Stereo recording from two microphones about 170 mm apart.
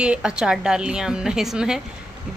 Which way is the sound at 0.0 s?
5° right (ahead or behind).